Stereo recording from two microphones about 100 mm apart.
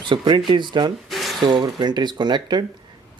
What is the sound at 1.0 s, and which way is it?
Mechanisms, centre (ahead or behind).